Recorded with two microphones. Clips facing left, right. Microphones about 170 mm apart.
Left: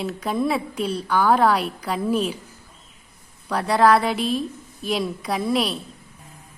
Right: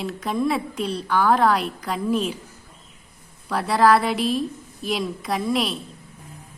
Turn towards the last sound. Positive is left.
turn(degrees=0)  # may be behind; listen again after turning